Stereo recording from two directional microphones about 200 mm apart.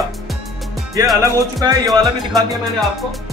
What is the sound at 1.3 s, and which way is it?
Speech, 20° right (ahead or behind).